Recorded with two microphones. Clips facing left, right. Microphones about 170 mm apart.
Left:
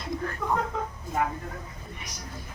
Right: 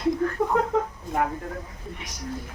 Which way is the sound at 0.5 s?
60° right (ahead or behind).